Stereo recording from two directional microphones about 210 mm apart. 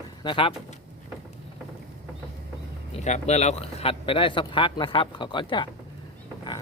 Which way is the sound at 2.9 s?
35° left (ahead or behind).